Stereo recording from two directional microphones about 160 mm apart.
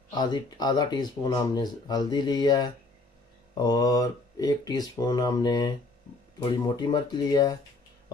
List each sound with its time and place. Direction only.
0.1 s speech: 25° left (ahead or behind)